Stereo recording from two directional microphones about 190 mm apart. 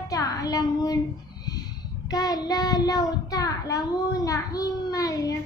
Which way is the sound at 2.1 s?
20° left (ahead or behind).